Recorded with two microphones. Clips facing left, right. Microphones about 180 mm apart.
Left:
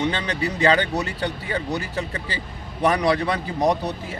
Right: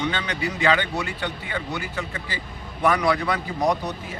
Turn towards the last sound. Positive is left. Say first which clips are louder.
# left 2 dB
turn(degrees=35)  # may be behind; listen again after turning